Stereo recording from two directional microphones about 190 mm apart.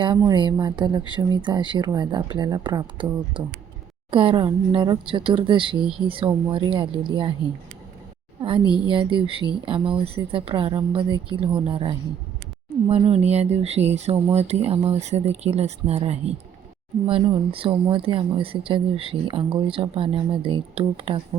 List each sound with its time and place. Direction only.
0.3 s speech: 20° right (ahead or behind)
8.4 s a woman's voice: 25° right (ahead or behind)